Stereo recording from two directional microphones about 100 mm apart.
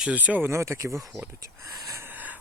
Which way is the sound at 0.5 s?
30° right (ahead or behind).